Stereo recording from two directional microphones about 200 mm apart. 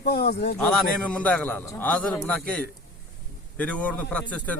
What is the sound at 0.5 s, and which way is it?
A man's voice, centre (ahead or behind).